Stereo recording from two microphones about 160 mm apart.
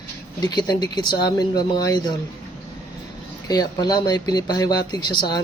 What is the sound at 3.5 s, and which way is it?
Speech, 25° left (ahead or behind).